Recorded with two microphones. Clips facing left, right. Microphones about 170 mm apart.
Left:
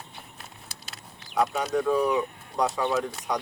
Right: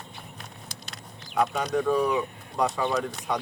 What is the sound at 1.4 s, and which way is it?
Speech, 5° left (ahead or behind).